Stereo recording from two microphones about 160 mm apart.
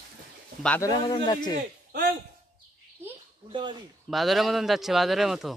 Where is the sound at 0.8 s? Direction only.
25° left (ahead or behind).